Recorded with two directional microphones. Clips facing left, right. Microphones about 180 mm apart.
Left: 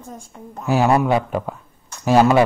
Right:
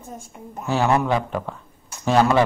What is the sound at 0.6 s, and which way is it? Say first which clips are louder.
A man's voice: left 3 dB; 10° left (ahead or behind).